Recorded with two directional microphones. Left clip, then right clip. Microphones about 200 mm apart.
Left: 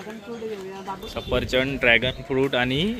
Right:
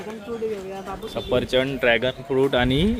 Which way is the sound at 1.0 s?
10° right (ahead or behind).